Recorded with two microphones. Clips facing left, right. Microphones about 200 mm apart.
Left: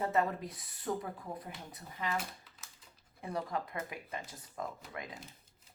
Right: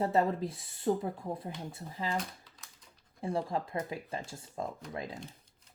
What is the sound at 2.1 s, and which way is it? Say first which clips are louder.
Typing: right 2 dB; 5° left (ahead or behind).